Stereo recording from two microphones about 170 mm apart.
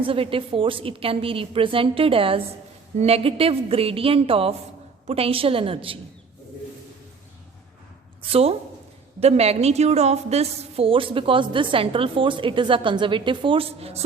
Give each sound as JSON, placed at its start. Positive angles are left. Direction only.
{"t": 0.0, "sound": "a woman's voice", "side_deg": -30}
{"t": 8.2, "sound": "a woman's voice", "side_deg": -35}